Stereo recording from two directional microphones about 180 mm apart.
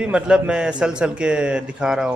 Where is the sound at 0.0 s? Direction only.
5° right (ahead or behind).